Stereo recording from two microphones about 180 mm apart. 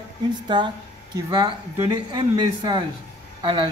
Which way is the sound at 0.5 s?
25° right (ahead or behind).